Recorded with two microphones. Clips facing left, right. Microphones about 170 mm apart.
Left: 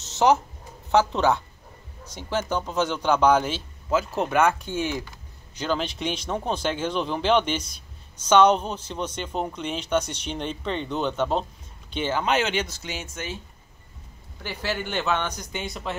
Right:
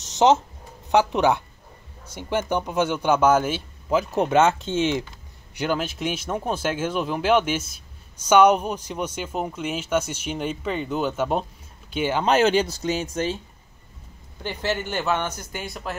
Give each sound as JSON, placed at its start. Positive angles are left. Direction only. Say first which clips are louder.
{"t": 0.0, "sound": "a sound", "louder": "right 2 dB", "side_deg": -20}
{"t": 0.8, "sound": "a man's voice", "louder": "right 1 dB", "side_deg": -15}
{"t": 5.6, "sound": "a man's voice", "louder": "right 2 dB", "side_deg": -10}
{"t": 12.3, "sound": "speech", "louder": "right 9 dB", "side_deg": -40}
{"t": 14.5, "sound": "a man's voice", "louder": "right 3 dB", "side_deg": 10}
{"t": 14.9, "sound": "a man's voice", "louder": "right 1 dB", "side_deg": -10}